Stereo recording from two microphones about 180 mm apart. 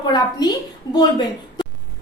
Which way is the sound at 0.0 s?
25° left (ahead or behind).